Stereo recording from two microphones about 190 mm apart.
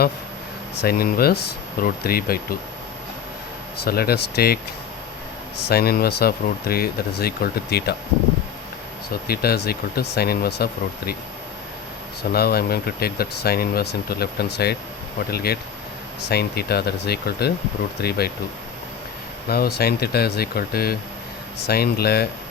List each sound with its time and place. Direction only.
0.8 s speech: 55° left (ahead or behind)
3.8 s speech: 55° left (ahead or behind)
5.6 s speech: 55° left (ahead or behind)
9.2 s speech: 55° left (ahead or behind)
12.3 s speech: 55° left (ahead or behind)
19.5 s speech: 55° left (ahead or behind)